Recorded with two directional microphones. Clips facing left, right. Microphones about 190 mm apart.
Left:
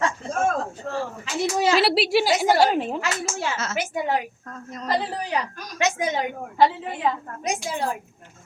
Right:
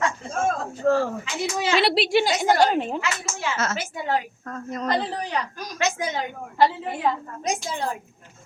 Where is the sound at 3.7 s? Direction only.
15° left (ahead or behind).